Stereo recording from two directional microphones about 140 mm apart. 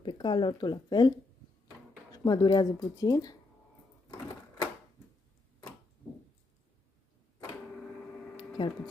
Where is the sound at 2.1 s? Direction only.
25° left (ahead or behind).